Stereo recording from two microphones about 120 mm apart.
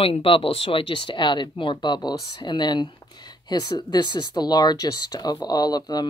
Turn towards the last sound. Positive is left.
turn(degrees=35)  # may be behind; listen again after turning